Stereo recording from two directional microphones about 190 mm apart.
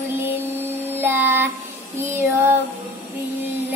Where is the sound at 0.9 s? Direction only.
10° right (ahead or behind).